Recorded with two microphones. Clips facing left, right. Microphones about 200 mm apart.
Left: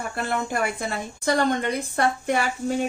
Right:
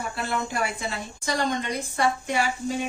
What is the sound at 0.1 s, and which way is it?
Speech, 50° left (ahead or behind).